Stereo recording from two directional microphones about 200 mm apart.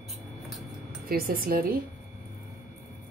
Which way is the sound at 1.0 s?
45° right (ahead or behind).